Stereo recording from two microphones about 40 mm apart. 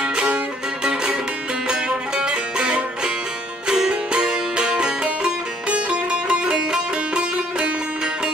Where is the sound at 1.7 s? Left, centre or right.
Right.